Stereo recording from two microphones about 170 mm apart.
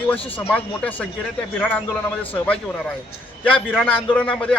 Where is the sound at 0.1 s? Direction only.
10° left (ahead or behind).